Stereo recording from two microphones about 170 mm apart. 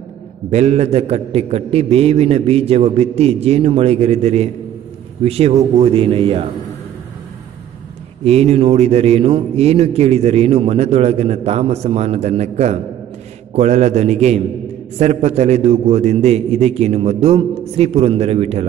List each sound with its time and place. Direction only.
0.5 s a man's voice: 40° right (ahead or behind)
8.2 s a man's voice: 40° right (ahead or behind)